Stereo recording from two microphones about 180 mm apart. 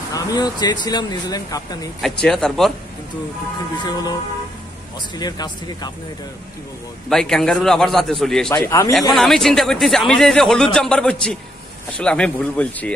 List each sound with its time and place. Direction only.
0.1 s speech: 20° left (ahead or behind)
2.2 s speech: 5° left (ahead or behind)
3.8 s speech: 20° left (ahead or behind)
7.1 s speech: 5° left (ahead or behind)
8.6 s speech: 15° left (ahead or behind)
9.1 s speech: centre (ahead or behind)